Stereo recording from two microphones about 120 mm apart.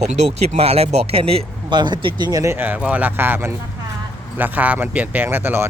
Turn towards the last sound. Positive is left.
turn(degrees=-20)  # may be behind; listen again after turning